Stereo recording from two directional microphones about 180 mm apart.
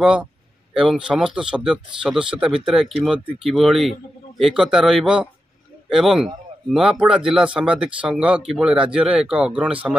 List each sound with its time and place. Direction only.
0.0 s speech: 5° right (ahead or behind)